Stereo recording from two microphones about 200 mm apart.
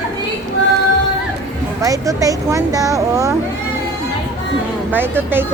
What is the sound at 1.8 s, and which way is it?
Speech, 15° right (ahead or behind).